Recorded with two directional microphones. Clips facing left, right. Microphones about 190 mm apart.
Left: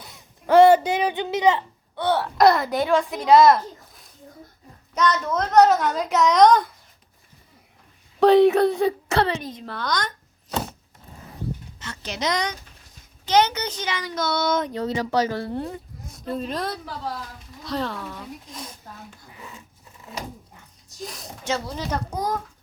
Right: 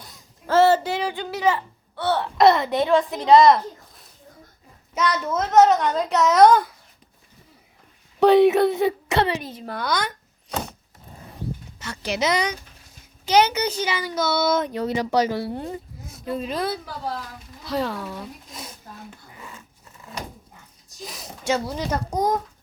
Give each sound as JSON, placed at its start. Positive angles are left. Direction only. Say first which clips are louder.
{"t": 0.4, "sound": "speech", "louder": "left 4 dB", "side_deg": 15}
{"t": 2.2, "sound": "a woman's voice", "louder": "right 2 dB", "side_deg": 0}
{"t": 4.9, "sound": "a woman's voice", "louder": "left 1 dB", "side_deg": -10}
{"t": 8.2, "sound": "speech", "louder": "even", "side_deg": -20}
{"t": 9.4, "sound": "a child's voice", "louder": "right 1 dB", "side_deg": -5}
{"t": 11.8, "sound": "a child's voice", "louder": "right 5 dB", "side_deg": -10}
{"t": 21.0, "sound": "a woman's voice", "louder": "left 2 dB", "side_deg": -5}
{"t": 21.4, "sound": "a child's voice", "louder": "right 3 dB", "side_deg": -15}